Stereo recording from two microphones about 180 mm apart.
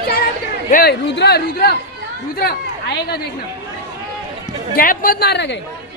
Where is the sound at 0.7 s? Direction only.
60° left (ahead or behind).